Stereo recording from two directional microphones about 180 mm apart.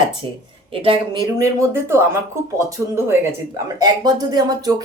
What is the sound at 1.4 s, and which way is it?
Speech, 15° right (ahead or behind).